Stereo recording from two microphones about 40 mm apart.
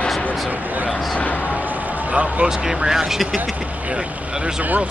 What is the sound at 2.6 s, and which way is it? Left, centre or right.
Speech, right.